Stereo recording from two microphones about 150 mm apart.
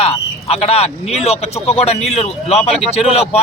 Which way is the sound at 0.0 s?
40° left (ahead or behind).